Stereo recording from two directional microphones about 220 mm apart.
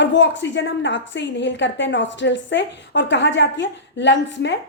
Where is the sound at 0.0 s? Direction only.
55° left (ahead or behind).